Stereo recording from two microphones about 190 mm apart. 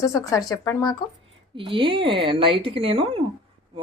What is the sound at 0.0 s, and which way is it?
Speech, 20° left (ahead or behind).